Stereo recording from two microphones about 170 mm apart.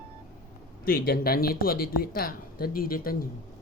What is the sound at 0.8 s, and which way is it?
Speech, 60° left (ahead or behind).